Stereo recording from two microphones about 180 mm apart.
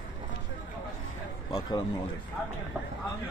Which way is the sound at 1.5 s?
20° left (ahead or behind).